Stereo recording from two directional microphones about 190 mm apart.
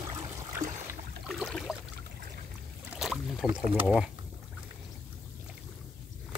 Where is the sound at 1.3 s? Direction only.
Centre (ahead or behind).